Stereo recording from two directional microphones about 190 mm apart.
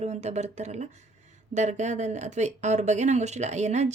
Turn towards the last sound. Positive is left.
turn(degrees=-35)  # may be behind; listen again after turning